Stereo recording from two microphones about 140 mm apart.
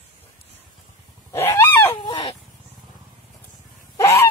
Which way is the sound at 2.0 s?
35° left (ahead or behind).